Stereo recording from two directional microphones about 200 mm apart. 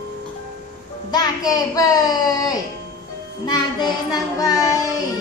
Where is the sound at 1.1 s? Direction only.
20° left (ahead or behind).